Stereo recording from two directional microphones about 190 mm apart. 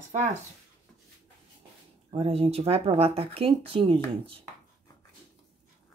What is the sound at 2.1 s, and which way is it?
Speech, 30° right (ahead or behind).